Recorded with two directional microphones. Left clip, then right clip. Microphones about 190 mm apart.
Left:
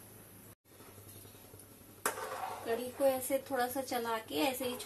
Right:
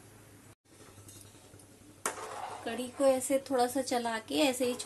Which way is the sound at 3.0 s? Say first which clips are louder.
Right 5 dB; 55° right (ahead or behind).